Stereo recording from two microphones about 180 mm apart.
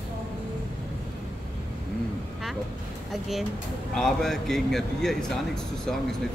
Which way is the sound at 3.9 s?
Centre (ahead or behind).